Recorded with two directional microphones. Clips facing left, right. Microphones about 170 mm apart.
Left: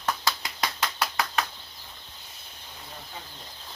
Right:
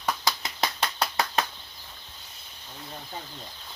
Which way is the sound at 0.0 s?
15° right (ahead or behind).